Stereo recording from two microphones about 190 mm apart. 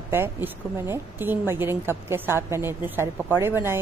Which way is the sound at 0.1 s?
10° right (ahead or behind).